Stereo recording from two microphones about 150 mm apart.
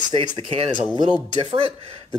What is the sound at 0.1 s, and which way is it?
Speech, 40° right (ahead or behind).